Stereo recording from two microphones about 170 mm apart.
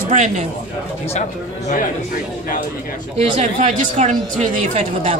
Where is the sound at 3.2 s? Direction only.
35° right (ahead or behind).